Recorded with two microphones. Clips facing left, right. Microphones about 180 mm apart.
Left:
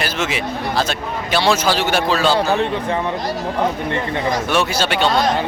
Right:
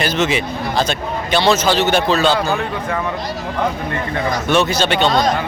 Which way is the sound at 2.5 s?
25° left (ahead or behind).